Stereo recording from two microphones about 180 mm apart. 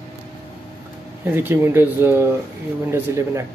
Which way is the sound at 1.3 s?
10° right (ahead or behind).